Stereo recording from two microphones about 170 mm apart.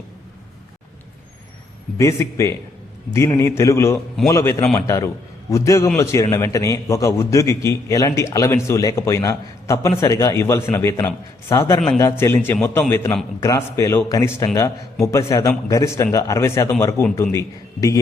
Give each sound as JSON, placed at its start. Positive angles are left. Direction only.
{"t": 2.0, "sound": "a man's voice", "side_deg": 15}